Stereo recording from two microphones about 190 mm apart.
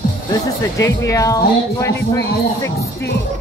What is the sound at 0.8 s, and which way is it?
Speech, 15° left (ahead or behind).